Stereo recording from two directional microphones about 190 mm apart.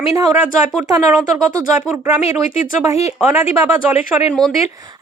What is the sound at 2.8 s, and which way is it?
Speech, 15° right (ahead or behind).